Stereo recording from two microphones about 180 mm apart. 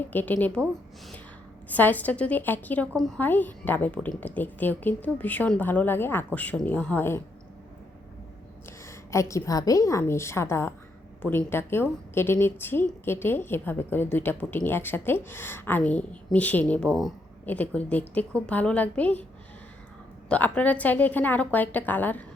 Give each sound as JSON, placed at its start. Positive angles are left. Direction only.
{"t": 0.1, "sound": "a woman's voice", "side_deg": 10}
{"t": 1.7, "sound": "a woman's voice", "side_deg": 10}
{"t": 8.9, "sound": "a woman's voice", "side_deg": 15}
{"t": 20.2, "sound": "a woman's voice", "side_deg": 5}